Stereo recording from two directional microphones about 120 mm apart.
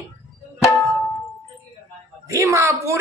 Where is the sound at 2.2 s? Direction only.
25° right (ahead or behind).